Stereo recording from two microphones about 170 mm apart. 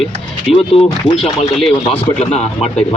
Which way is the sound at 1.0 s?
35° left (ahead or behind).